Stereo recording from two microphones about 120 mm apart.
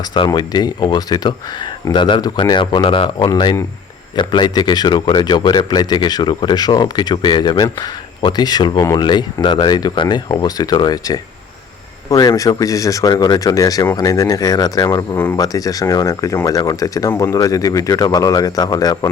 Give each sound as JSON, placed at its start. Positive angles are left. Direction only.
{"t": 0.3, "sound": "speech", "side_deg": 35}